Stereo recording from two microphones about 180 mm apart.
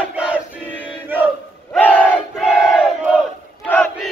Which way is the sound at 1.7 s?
10° left (ahead or behind).